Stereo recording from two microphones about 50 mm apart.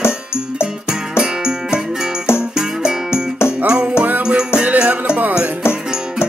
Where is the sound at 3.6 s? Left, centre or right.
Centre.